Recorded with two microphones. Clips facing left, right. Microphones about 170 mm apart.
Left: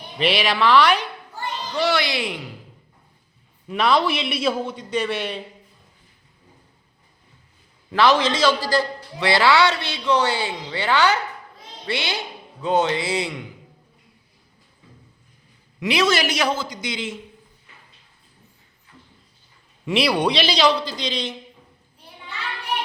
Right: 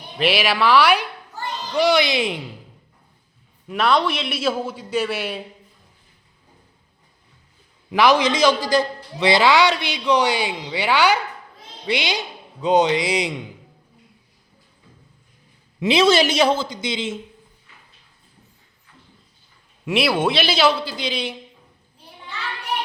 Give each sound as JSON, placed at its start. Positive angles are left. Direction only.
{"t": 0.2, "sound": "a man's voice", "side_deg": -5}
{"t": 3.7, "sound": "a man's voice", "side_deg": 0}
{"t": 7.9, "sound": "a man's voice", "side_deg": -15}
{"t": 15.8, "sound": "a man's voice", "side_deg": -25}
{"t": 19.8, "sound": "a man's voice", "side_deg": -5}